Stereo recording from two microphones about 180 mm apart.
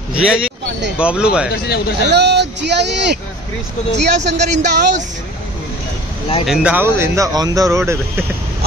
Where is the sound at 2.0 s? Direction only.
70° right (ahead or behind).